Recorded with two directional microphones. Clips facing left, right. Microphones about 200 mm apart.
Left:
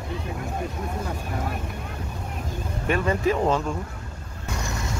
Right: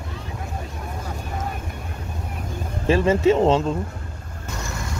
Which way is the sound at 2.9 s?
25° right (ahead or behind).